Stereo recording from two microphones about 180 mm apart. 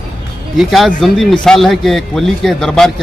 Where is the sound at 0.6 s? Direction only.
Centre (ahead or behind).